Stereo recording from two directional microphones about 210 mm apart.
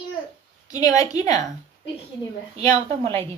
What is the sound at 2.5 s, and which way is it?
Speech, 30° right (ahead or behind).